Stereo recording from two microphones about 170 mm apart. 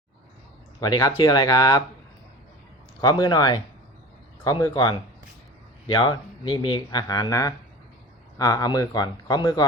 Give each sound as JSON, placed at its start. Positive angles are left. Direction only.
{"t": 0.8, "sound": "speech", "side_deg": 20}
{"t": 3.0, "sound": "speech", "side_deg": 25}